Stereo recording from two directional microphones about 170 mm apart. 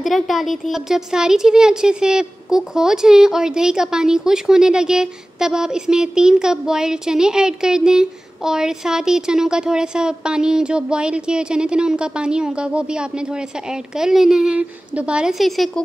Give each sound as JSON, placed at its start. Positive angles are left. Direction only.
{"t": 0.0, "sound": "speech", "side_deg": 0}